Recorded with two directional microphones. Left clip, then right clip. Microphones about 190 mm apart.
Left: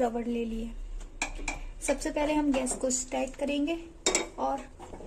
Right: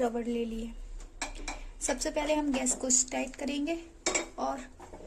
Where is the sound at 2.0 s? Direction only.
10° right (ahead or behind).